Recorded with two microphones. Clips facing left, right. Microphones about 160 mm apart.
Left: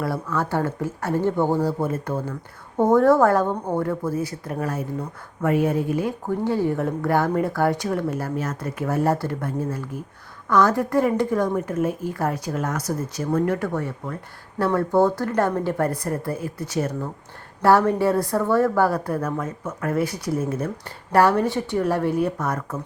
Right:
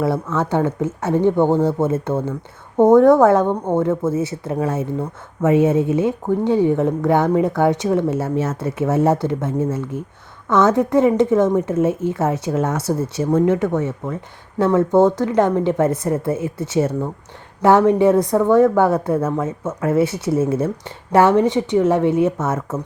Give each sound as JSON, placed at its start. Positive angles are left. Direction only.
{"t": 0.0, "sound": "speech", "side_deg": -20}